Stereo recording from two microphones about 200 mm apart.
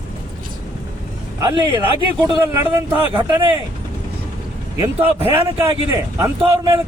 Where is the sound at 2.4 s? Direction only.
10° right (ahead or behind).